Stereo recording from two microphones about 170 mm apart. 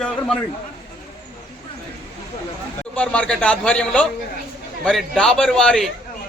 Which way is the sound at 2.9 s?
5° left (ahead or behind).